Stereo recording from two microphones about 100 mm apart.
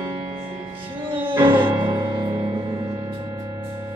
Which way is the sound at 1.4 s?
55° right (ahead or behind).